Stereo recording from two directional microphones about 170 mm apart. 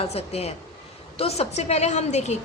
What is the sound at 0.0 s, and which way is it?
A woman's voice, 35° left (ahead or behind).